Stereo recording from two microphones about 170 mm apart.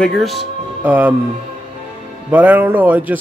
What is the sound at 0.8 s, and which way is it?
Speech, 10° right (ahead or behind).